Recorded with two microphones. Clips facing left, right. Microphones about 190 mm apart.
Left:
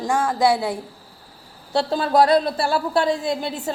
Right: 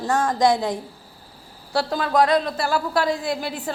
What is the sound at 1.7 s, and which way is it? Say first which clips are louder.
Speech: left 2 dB; 30° left (ahead or behind).